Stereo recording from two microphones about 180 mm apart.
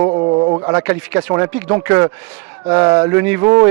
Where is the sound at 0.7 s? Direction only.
10° right (ahead or behind).